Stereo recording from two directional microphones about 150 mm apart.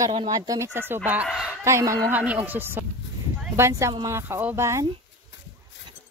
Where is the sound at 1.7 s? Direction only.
20° right (ahead or behind).